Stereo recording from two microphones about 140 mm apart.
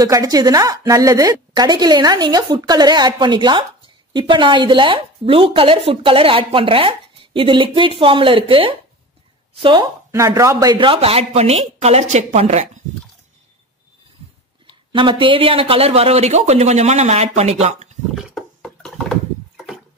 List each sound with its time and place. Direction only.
0.0 s a woman's voice: 25° right (ahead or behind)
10.1 s a man's voice: 20° right (ahead or behind); by 12.6 s 50° right (ahead or behind)
14.9 s a man's voice: 35° right (ahead or behind)
18.1 s a sound: centre (ahead or behind)